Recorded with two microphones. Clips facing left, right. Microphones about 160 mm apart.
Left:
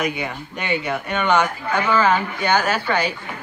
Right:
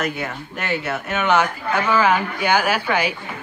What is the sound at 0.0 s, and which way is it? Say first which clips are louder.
A man's voice: left 1 dB; centre (ahead or behind).